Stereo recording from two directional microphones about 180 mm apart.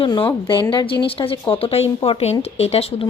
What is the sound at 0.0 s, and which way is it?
Speech, 30° left (ahead or behind).